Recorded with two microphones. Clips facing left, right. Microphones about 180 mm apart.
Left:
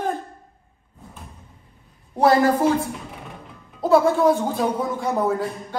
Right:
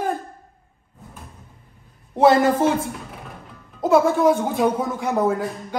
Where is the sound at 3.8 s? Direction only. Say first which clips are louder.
Even; 20° right (ahead or behind).